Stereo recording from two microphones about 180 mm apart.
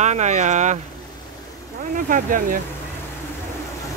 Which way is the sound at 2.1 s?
50° right (ahead or behind).